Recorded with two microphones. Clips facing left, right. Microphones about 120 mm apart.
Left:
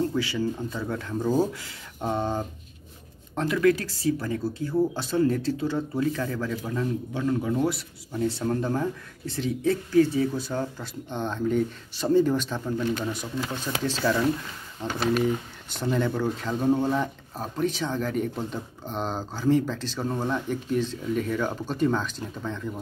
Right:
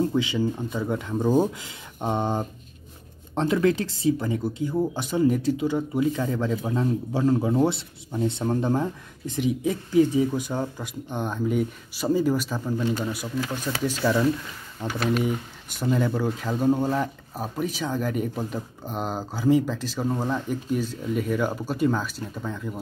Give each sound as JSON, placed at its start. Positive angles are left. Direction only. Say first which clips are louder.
{"t": 0.1, "sound": "speech", "louder": "right 3 dB", "side_deg": -20}